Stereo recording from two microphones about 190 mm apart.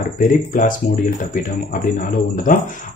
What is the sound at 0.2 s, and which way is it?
Speech, 45° left (ahead or behind).